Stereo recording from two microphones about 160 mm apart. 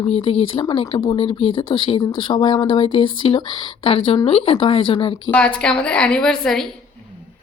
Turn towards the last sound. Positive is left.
turn(degrees=5)  # may be behind; listen again after turning